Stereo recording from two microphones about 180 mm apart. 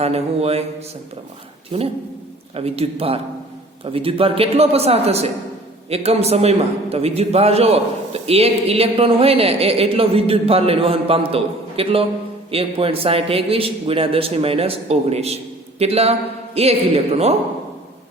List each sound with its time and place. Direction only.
0.0 s a man's voice: 35° right (ahead or behind)
2.6 s a man's voice: 35° right (ahead or behind)